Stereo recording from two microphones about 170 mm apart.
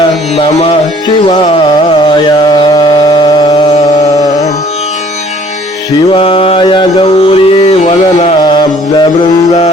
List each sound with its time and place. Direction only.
0.3 s music: 35° left (ahead or behind)
1.4 s carnatic music: 30° left (ahead or behind)
6.1 s mantra: 30° left (ahead or behind)
8.4 s music: 25° left (ahead or behind)